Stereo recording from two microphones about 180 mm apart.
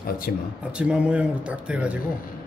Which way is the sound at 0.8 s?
5° right (ahead or behind).